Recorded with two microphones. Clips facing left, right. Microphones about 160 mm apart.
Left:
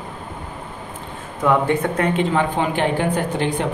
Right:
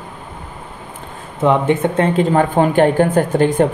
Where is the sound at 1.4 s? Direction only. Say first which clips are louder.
Right 4 dB; 20° right (ahead or behind).